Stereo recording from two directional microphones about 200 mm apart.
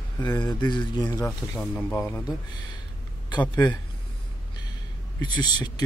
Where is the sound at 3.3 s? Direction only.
20° left (ahead or behind).